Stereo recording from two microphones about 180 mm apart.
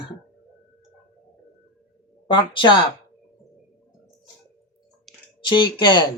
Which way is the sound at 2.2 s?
25° left (ahead or behind).